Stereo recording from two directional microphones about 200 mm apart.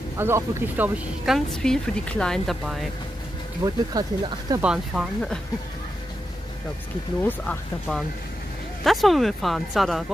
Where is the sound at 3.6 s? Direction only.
20° right (ahead or behind).